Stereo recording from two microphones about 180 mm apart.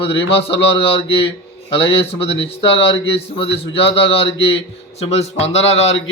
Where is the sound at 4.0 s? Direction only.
30° left (ahead or behind).